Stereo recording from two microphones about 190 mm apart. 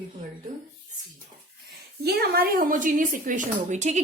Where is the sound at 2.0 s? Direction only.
55° right (ahead or behind).